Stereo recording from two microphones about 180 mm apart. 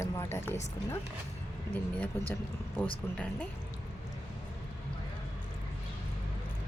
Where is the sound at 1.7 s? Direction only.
10° left (ahead or behind).